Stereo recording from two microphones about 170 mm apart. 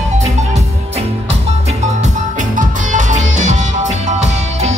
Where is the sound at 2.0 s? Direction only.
50° right (ahead or behind).